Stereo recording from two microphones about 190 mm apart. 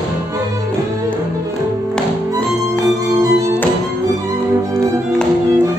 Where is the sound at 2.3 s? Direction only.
20° right (ahead or behind).